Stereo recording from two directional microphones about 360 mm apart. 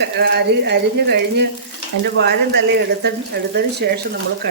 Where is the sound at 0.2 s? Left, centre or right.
Right.